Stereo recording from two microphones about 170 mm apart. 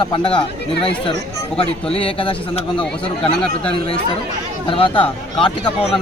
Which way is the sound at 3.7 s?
35° left (ahead or behind).